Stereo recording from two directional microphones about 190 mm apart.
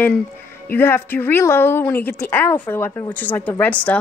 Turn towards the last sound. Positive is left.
turn(degrees=10)  # may be behind; listen again after turning